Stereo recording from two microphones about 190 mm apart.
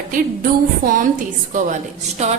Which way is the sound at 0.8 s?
50° right (ahead or behind).